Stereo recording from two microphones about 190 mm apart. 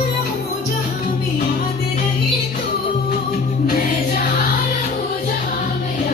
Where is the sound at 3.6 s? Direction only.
50° left (ahead or behind).